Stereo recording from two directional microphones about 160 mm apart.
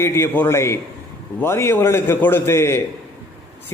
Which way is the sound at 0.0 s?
15° left (ahead or behind).